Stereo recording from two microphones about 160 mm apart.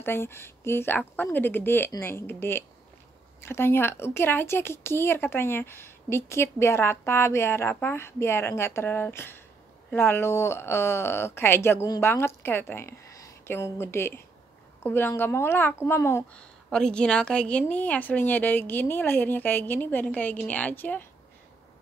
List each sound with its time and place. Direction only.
0.0 s speech: 15° left (ahead or behind)
16.7 s speech: 5° left (ahead or behind)